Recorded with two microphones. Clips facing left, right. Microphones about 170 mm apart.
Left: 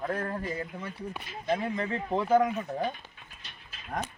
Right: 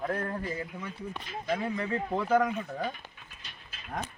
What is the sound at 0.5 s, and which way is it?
Speech, 35° left (ahead or behind).